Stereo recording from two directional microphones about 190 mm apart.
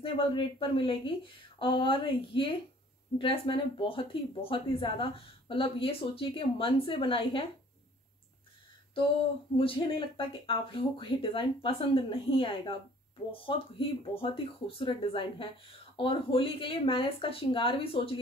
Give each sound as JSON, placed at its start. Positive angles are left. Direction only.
{"t": 0.0, "sound": "speech", "side_deg": 25}
{"t": 9.6, "sound": "speech", "side_deg": 30}